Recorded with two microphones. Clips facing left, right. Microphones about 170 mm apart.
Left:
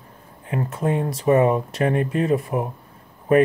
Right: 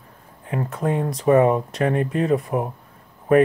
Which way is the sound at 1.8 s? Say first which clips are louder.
Even; 35° right (ahead or behind).